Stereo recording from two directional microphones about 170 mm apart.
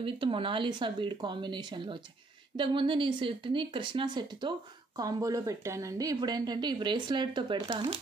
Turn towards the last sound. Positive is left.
turn(degrees=-30)  # may be behind; listen again after turning